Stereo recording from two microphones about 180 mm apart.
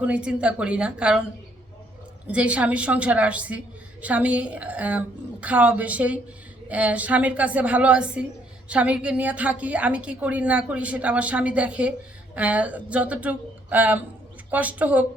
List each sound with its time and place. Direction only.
0.0 s a woman's voice: 5° right (ahead or behind)
2.2 s a woman's voice: 5° right (ahead or behind)